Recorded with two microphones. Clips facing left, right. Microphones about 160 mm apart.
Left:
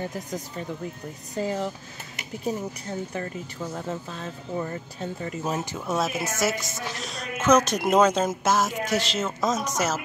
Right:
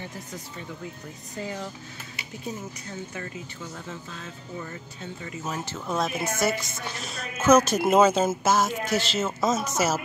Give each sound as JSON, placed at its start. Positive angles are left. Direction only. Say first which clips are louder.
{"t": 0.0, "sound": "speech", "louder": "left 6 dB", "side_deg": 40}
{"t": 3.7, "sound": "speech", "louder": "left 6 dB", "side_deg": 40}
{"t": 5.7, "sound": "a woman's voice", "louder": "left 1 dB", "side_deg": 5}